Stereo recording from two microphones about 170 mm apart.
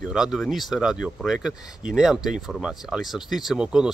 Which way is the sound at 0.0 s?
5° right (ahead or behind).